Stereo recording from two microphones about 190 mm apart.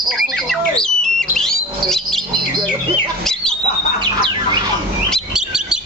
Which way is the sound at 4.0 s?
25° right (ahead or behind).